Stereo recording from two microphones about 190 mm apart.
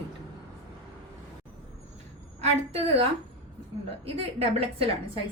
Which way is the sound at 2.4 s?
30° right (ahead or behind).